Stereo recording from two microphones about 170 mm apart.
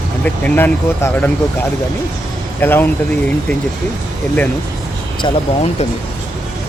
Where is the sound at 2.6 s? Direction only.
10° left (ahead or behind).